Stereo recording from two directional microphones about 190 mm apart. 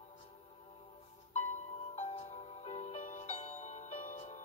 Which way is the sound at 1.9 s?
35° left (ahead or behind).